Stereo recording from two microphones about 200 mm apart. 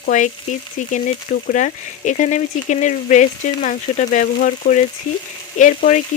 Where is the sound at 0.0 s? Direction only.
40° left (ahead or behind).